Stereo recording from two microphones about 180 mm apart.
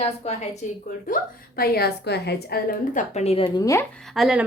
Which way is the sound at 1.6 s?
60° left (ahead or behind).